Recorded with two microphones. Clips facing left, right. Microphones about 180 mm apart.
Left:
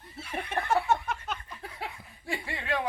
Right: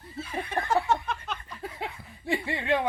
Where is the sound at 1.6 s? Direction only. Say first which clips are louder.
Right 5 dB; 20° right (ahead or behind).